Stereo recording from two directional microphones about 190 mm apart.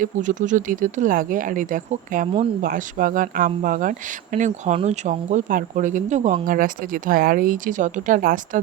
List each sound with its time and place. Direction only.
0.0 s speech: 40° right (ahead or behind)